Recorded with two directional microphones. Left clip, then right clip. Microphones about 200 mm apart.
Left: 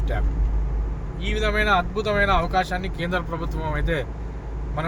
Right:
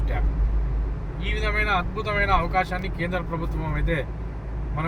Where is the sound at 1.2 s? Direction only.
45° left (ahead or behind).